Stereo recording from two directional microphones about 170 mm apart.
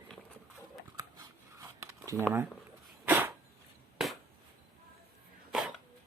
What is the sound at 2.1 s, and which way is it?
Speech, 15° right (ahead or behind).